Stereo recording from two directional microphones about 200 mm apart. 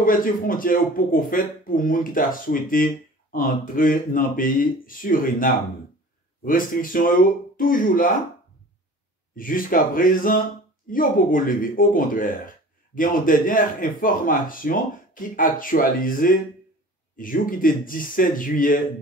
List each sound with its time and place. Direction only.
0.0 s speech: 45° left (ahead or behind)
9.3 s speech: 45° left (ahead or behind)